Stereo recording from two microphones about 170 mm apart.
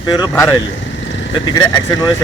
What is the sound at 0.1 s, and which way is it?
Speech, 20° left (ahead or behind).